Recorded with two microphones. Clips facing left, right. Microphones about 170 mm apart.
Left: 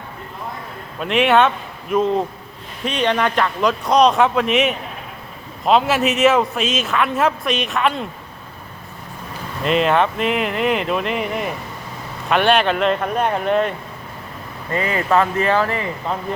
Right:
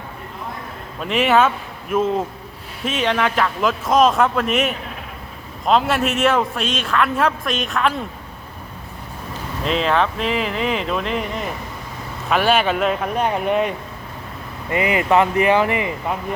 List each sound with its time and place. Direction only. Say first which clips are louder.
0.9 s a man's voice: left 1 dB; centre (ahead or behind)
9.6 s a man's voice: left 3 dB; 5° left (ahead or behind); by 16.1 s 15° right (ahead or behind)